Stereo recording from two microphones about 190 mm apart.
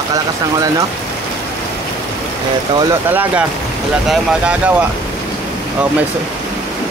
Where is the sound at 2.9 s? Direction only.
10° right (ahead or behind).